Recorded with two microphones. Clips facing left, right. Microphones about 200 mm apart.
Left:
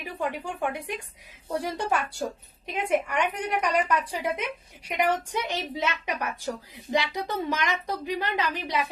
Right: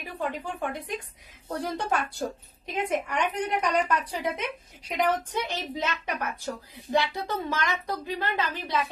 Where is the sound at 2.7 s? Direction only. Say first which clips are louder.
Left 2 dB; 10° left (ahead or behind).